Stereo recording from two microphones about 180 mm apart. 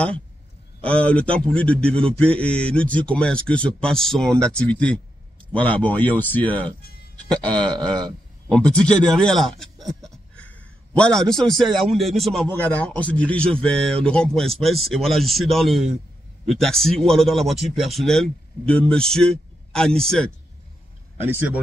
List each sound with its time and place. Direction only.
0.7 s a man's voice: 5° left (ahead or behind)
7.4 s a sound: 25° right (ahead or behind)
8.5 s a man's voice: 5° left (ahead or behind)
21.3 s speech: 10° right (ahead or behind)